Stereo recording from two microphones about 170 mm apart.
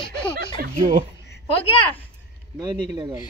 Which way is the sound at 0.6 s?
50° right (ahead or behind).